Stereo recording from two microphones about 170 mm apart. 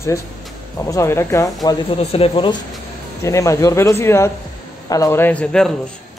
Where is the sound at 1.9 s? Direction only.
35° left (ahead or behind).